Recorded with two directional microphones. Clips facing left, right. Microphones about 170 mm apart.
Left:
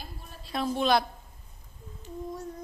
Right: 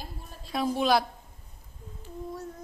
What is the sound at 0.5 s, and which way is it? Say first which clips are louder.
Speech: right 1 dB; 10° right (ahead or behind).